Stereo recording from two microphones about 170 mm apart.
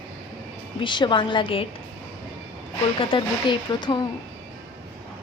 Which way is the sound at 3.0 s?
30° left (ahead or behind).